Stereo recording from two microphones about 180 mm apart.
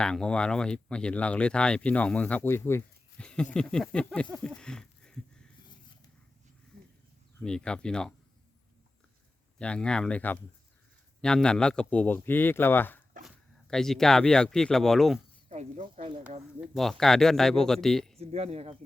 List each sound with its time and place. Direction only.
0.0 s speech: 5° left (ahead or behind)
7.3 s speech: 5° left (ahead or behind)
9.6 s speech: 5° left (ahead or behind)
15.4 s speech: 40° right (ahead or behind)
16.6 s speech: centre (ahead or behind)
18.2 s speech: 35° right (ahead or behind)